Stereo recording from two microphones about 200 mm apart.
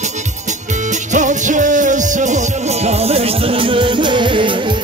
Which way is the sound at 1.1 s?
40° right (ahead or behind).